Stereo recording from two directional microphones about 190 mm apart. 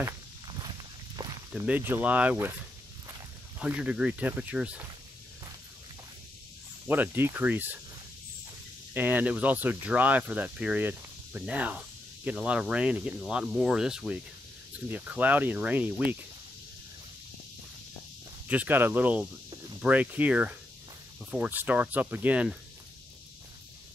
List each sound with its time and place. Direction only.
1.2 s a sound: 25° right (ahead or behind)
1.7 s speech: 10° right (ahead or behind)
3.5 s speech: 5° right (ahead or behind)
6.9 s speech: 10° right (ahead or behind)
8.9 s speech: 10° right (ahead or behind)
18.5 s speech: 10° right (ahead or behind)